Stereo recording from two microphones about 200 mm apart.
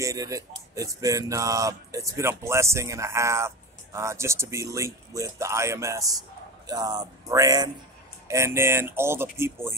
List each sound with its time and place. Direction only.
0.0 s speech: 15° right (ahead or behind)